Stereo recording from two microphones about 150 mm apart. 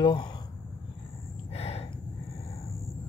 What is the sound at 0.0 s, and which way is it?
Speech, 30° left (ahead or behind).